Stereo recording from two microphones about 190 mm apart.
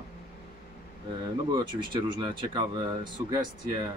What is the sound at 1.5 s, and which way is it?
Speech, 25° right (ahead or behind).